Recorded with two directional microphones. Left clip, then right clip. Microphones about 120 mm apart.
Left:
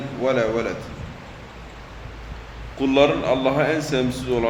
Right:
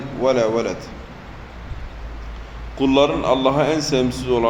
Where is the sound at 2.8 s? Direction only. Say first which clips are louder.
Right 1 dB; 20° right (ahead or behind).